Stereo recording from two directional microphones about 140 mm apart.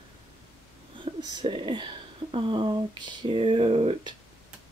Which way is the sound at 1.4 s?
35° right (ahead or behind).